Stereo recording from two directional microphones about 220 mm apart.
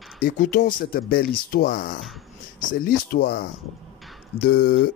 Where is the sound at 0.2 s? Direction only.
40° left (ahead or behind).